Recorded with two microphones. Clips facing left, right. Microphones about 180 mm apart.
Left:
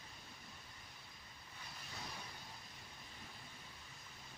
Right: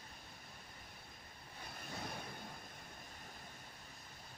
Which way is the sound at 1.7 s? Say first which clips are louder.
Right 5 dB; 55° right (ahead or behind).